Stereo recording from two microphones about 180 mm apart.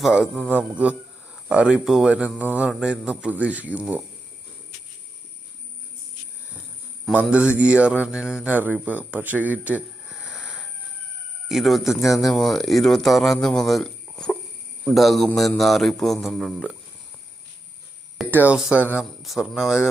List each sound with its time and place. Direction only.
0.0 s speech: 5° right (ahead or behind)
7.1 s speech: centre (ahead or behind)
18.3 s speech: 10° right (ahead or behind)
18.7 s speech: 10° left (ahead or behind)
19.2 s speech: centre (ahead or behind)